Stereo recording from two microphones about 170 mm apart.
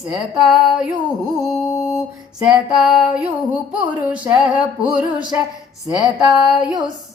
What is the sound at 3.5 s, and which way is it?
Speech, 5° right (ahead or behind).